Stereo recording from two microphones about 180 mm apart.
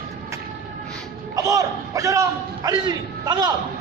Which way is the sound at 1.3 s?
20° right (ahead or behind).